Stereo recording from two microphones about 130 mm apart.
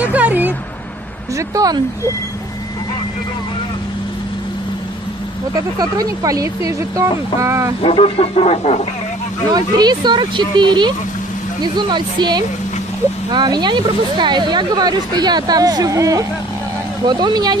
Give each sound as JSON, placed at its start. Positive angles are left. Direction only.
{"t": 0.0, "sound": "a sound", "side_deg": -10}
{"t": 1.5, "sound": "speech", "side_deg": -25}
{"t": 5.8, "sound": "speech", "side_deg": -30}
{"t": 7.8, "sound": "speech", "side_deg": 50}
{"t": 9.5, "sound": "speech", "side_deg": -30}